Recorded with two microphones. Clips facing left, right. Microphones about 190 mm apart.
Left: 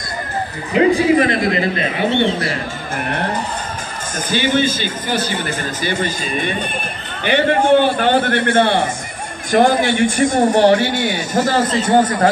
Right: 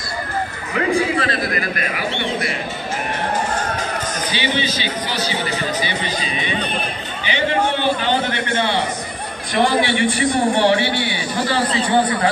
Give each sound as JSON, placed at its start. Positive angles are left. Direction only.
{"t": 0.7, "sound": "a man's voice", "side_deg": 20}
{"t": 4.3, "sound": "a man's voice", "side_deg": 50}